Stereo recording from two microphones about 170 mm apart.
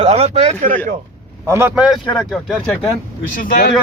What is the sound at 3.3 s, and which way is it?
Speech, 55° left (ahead or behind).